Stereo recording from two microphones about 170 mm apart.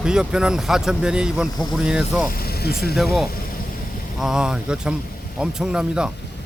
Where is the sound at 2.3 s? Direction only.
65° left (ahead or behind).